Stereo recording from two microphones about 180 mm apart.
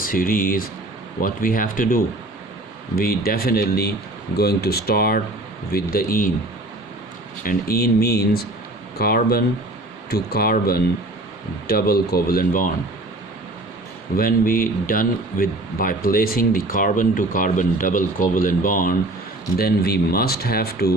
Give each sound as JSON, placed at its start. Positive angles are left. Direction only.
{"t": 0.0, "sound": "a man's voice", "side_deg": 50}
{"t": 7.4, "sound": "speech", "side_deg": 55}
{"t": 14.2, "sound": "a man's voice", "side_deg": 50}